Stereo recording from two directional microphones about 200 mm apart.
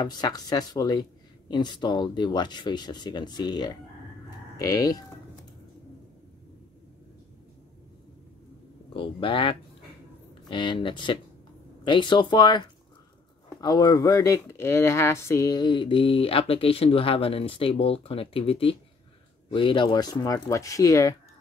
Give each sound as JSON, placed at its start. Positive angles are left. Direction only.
{"t": 0.0, "sound": "speech", "side_deg": 20}
{"t": 8.9, "sound": "a sound", "side_deg": 25}
{"t": 10.5, "sound": "speech", "side_deg": 25}